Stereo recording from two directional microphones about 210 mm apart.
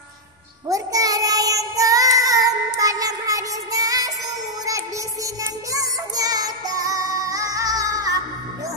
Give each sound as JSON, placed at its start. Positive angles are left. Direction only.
{"t": 0.7, "sound": "child singing", "side_deg": -15}
{"t": 4.6, "sound": "music", "side_deg": -15}